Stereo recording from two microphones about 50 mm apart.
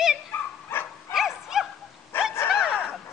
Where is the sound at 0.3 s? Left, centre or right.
Left.